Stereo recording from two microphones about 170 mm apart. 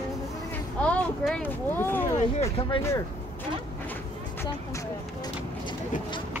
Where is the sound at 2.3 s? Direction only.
35° left (ahead or behind).